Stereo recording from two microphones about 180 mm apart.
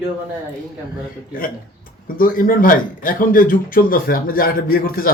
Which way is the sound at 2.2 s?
50° left (ahead or behind).